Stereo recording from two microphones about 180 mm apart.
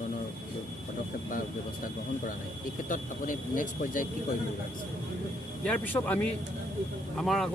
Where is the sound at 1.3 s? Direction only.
50° left (ahead or behind).